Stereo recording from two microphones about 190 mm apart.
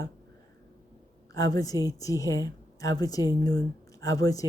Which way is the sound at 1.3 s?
20° left (ahead or behind).